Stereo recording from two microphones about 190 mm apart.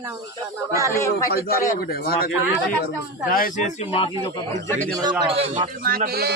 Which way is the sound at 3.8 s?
30° left (ahead or behind).